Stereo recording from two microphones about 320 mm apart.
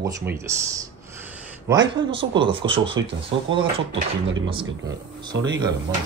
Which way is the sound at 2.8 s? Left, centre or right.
Right.